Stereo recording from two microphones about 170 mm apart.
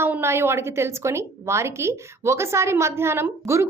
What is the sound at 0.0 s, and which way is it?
A woman's voice, 15° right (ahead or behind).